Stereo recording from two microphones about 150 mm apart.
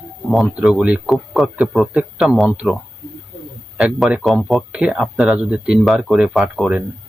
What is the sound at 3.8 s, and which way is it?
Speech, centre (ahead or behind).